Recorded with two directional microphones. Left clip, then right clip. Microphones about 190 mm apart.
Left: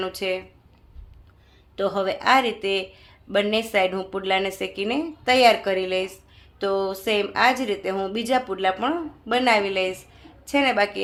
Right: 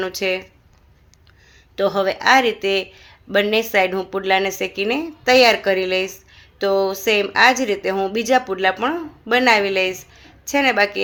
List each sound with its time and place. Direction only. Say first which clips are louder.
0.0 s a woman's voice: right 5 dB; 20° right (ahead or behind)
1.7 s a woman's voice: right 5 dB; 20° right (ahead or behind)